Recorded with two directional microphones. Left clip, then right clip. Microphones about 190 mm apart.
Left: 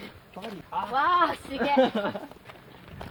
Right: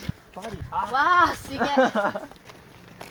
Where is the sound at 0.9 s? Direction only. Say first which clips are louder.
Right 4 dB; 50° right (ahead or behind).